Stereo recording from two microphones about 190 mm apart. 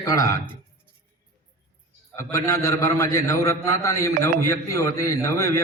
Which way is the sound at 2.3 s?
15° left (ahead or behind).